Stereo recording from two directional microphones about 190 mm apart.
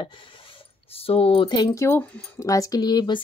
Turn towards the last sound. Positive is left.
turn(degrees=20)  # may be behind; listen again after turning